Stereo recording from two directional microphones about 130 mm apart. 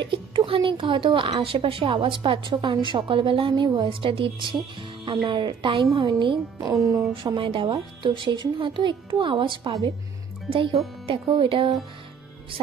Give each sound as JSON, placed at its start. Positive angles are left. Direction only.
{"t": 0.0, "sound": "a woman's voice", "side_deg": -40}
{"t": 6.7, "sound": "speech", "side_deg": -25}
{"t": 7.2, "sound": "a woman's voice", "side_deg": -40}
{"t": 9.7, "sound": "speech", "side_deg": -25}
{"t": 10.5, "sound": "a woman's voice", "side_deg": -45}